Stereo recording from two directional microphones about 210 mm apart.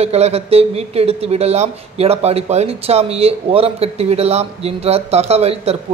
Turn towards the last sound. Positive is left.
turn(degrees=-30)  # may be behind; listen again after turning